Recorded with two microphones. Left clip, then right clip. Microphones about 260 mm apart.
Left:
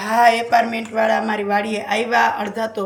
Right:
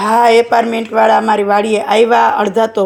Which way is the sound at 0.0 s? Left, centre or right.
Centre.